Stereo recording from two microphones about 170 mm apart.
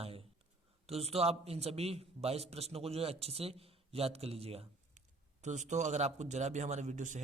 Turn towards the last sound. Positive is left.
turn(degrees=-45)  # may be behind; listen again after turning